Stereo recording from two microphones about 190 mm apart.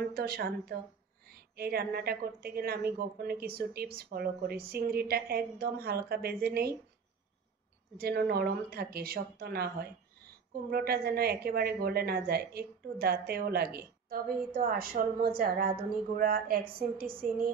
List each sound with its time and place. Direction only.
0.1 s a woman's voice: 55° right (ahead or behind)
8.0 s a woman's voice: 55° right (ahead or behind)